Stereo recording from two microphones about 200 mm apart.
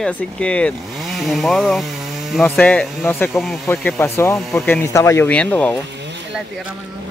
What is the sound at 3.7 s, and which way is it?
Speech, 10° left (ahead or behind).